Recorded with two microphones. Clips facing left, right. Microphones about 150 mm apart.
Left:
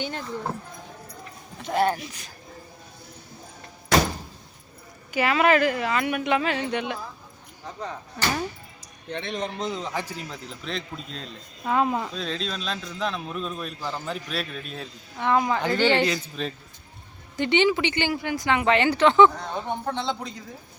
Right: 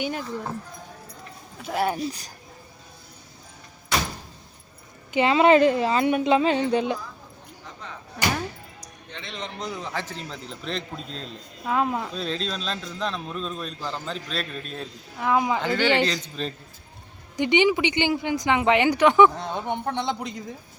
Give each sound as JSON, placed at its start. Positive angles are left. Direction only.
{"t": 0.0, "sound": "speech", "side_deg": -10}
{"t": 1.6, "sound": "a man's voice", "side_deg": -5}
{"t": 2.0, "sound": "speech", "side_deg": -35}
{"t": 5.1, "sound": "speech", "side_deg": -25}
{"t": 8.2, "sound": "speech", "side_deg": -5}
{"t": 9.1, "sound": "a man's voice", "side_deg": 45}
{"t": 9.6, "sound": "a man's voice", "side_deg": 25}
{"t": 15.6, "sound": "a man's voice", "side_deg": 15}
{"t": 17.3, "sound": "speech", "side_deg": -15}